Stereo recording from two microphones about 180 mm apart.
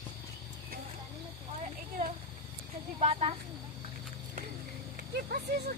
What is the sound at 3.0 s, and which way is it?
Snake, 35° right (ahead or behind).